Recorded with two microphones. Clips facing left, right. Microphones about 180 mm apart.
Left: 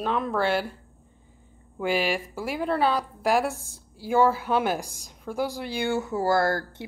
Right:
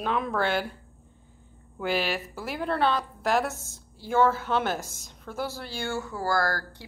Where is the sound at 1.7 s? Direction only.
10° left (ahead or behind).